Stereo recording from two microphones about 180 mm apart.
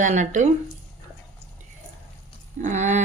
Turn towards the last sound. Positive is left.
turn(degrees=-40)  # may be behind; listen again after turning